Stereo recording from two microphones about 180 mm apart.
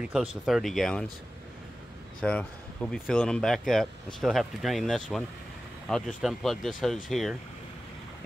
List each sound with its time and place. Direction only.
0.0 s speech: 5° right (ahead or behind)
2.2 s speech: 5° left (ahead or behind)